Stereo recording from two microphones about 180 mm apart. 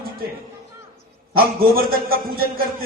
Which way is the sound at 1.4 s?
55° right (ahead or behind).